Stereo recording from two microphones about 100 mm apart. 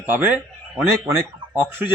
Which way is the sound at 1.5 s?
20° right (ahead or behind).